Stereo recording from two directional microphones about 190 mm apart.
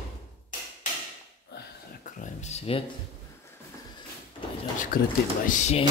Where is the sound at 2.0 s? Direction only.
40° left (ahead or behind).